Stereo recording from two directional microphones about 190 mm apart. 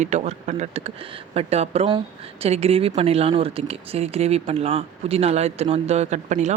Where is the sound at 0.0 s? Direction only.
40° right (ahead or behind).